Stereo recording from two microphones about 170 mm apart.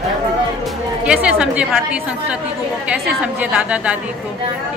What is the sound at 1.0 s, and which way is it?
Speech, 5° right (ahead or behind).